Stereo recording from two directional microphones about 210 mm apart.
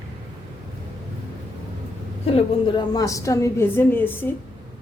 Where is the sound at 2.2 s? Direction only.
25° left (ahead or behind); by 4.4 s 10° left (ahead or behind).